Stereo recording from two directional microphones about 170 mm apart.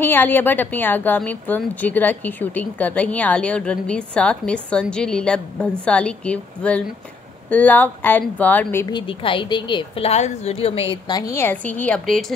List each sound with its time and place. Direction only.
0.0 s a woman's voice: 10° left (ahead or behind)
8.8 s a woman's voice: 30° left (ahead or behind)
11.1 s a woman's voice: 20° left (ahead or behind); by 12.3 s 5° left (ahead or behind)